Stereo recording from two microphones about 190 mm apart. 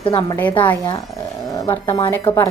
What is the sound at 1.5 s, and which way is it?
Speech, 15° left (ahead or behind).